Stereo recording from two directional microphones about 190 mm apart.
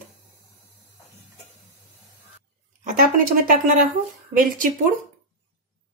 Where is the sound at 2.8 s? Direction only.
45° right (ahead or behind).